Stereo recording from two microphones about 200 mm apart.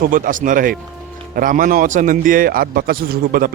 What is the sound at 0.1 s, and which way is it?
A man's voice, 40° right (ahead or behind).